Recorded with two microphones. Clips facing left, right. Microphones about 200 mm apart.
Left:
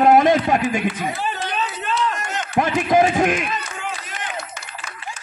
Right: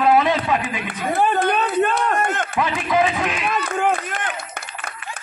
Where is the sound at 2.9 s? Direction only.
45° left (ahead or behind).